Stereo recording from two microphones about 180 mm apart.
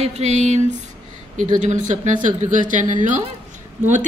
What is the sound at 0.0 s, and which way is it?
A man's voice, 40° right (ahead or behind).